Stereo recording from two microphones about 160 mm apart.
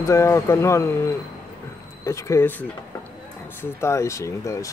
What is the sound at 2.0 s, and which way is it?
Speech, 20° left (ahead or behind).